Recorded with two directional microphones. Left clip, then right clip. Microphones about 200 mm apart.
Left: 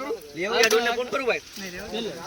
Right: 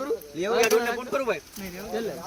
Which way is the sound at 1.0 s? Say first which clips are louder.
Left 2 dB; 55° right (ahead or behind).